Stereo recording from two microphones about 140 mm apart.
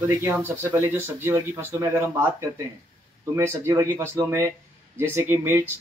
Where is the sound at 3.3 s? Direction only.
20° right (ahead or behind).